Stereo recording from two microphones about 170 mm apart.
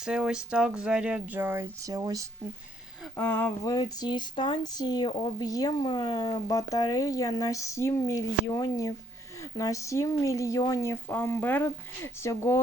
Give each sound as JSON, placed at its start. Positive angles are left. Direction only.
{"t": 0.0, "sound": "speech", "side_deg": -5}
{"t": 3.2, "sound": "speech", "side_deg": 10}